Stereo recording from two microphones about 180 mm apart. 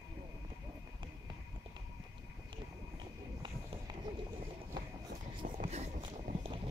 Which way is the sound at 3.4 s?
25° right (ahead or behind).